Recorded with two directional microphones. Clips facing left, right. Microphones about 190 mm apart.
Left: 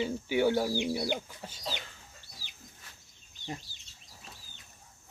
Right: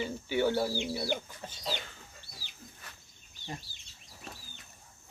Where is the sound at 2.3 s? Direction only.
35° left (ahead or behind).